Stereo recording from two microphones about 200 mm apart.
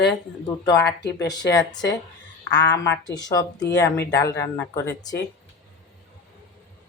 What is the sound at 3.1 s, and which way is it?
Speech, 20° left (ahead or behind).